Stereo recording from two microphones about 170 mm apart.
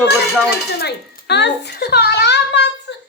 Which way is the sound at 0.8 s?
80° left.